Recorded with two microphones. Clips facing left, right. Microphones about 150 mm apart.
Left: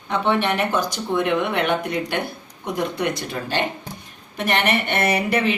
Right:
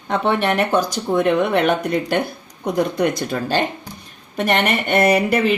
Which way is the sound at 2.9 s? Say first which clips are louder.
Right 5 dB; 45° right (ahead or behind).